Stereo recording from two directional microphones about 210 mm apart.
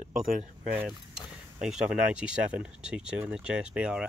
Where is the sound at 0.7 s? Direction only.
5° right (ahead or behind).